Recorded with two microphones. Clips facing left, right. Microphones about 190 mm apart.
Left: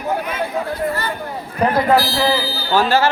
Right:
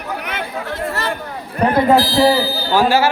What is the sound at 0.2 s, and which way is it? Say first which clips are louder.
Chatter: left 3 dB; 80° right.